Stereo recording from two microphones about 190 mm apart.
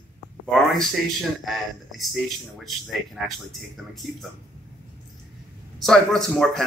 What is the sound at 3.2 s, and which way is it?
Speech, centre (ahead or behind).